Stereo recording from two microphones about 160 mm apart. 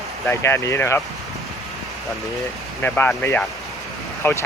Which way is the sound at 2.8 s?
10° left (ahead or behind).